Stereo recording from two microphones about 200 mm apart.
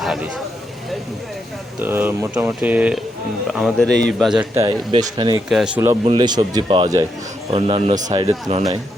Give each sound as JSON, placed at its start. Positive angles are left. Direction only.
{"t": 0.0, "sound": "speech", "side_deg": 0}
{"t": 1.8, "sound": "speech", "side_deg": -10}
{"t": 4.9, "sound": "speech", "side_deg": -20}
{"t": 5.5, "sound": "speech", "side_deg": -5}
{"t": 6.1, "sound": "a man's voice", "side_deg": -20}